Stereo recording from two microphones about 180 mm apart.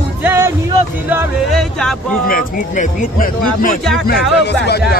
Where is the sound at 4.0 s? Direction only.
65° left (ahead or behind).